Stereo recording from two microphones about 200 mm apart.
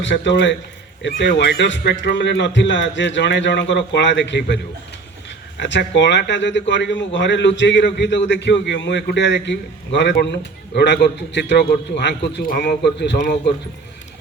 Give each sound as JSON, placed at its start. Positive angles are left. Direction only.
{"t": 0.0, "sound": "a man's voice", "side_deg": 60}